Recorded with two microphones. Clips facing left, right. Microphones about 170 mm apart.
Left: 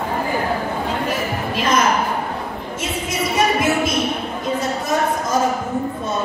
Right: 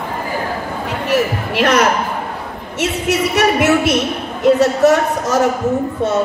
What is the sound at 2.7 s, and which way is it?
A man's voice, 75° right (ahead or behind).